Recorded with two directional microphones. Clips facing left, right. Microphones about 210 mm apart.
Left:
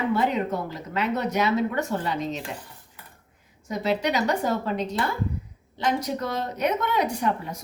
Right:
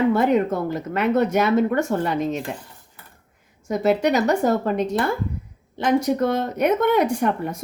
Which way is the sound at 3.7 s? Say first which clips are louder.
Right 6 dB; 50° right (ahead or behind).